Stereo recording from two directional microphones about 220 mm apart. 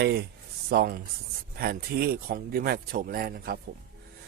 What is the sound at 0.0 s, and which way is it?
Speech, 50° right (ahead or behind).